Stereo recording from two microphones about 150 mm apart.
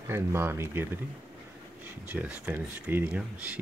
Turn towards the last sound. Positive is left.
turn(degrees=-10)  # may be behind; listen again after turning